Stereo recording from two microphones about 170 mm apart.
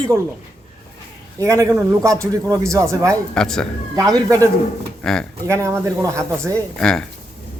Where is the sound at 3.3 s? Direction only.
5° left (ahead or behind).